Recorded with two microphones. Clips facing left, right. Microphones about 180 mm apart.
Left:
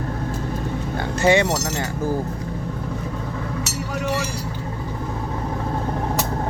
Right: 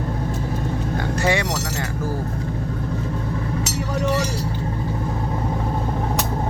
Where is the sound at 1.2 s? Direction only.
25° left (ahead or behind).